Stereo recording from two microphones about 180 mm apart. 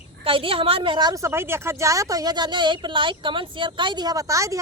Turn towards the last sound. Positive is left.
turn(degrees=-15)  # may be behind; listen again after turning